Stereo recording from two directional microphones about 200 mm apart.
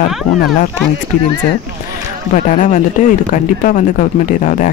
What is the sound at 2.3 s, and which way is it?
Speech, 40° left (ahead or behind).